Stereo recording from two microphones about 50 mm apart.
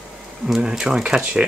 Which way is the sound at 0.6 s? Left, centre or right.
Centre.